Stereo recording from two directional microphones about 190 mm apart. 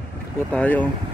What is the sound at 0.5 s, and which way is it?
Speech, 10° left (ahead or behind).